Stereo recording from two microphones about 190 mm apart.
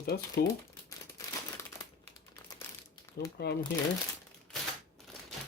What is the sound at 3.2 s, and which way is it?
Speech, 60° left (ahead or behind).